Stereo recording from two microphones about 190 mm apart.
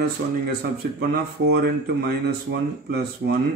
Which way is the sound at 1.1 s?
55° right (ahead or behind).